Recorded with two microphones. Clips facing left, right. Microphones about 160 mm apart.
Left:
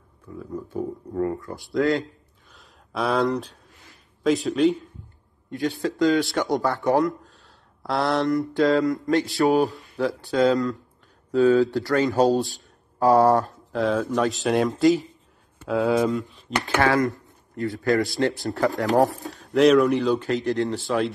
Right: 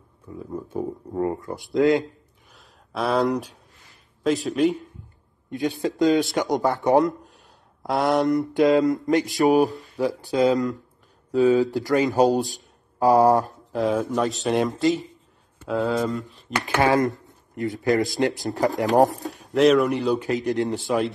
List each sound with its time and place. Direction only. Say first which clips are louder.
0.4 s speech: even; 25° right (ahead or behind)
2.5 s a sound: left 1 dB; centre (ahead or behind)
4.2 s speech: left 1 dB; centre (ahead or behind)
5.5 s speech: right 1 dB; 20° right (ahead or behind); by 16.5 s centre (ahead or behind)
16.5 s speech: right 1 dB; 20° right (ahead or behind)
19.5 s speech: left 1 dB; centre (ahead or behind)
20.3 s speech: even; 20° right (ahead or behind)